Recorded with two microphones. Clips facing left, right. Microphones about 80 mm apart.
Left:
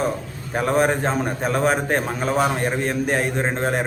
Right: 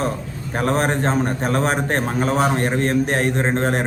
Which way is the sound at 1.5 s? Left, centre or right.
Right.